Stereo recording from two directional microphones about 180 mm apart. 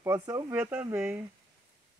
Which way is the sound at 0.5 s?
10° right (ahead or behind).